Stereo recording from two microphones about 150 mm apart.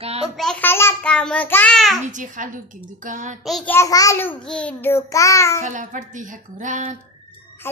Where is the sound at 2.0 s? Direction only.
60° right (ahead or behind).